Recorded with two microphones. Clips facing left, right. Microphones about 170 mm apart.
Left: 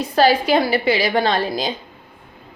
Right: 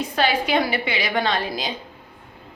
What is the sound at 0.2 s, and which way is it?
A woman's voice, 35° left (ahead or behind).